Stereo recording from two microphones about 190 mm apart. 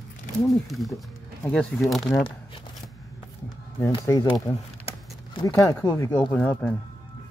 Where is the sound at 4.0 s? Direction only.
20° left (ahead or behind).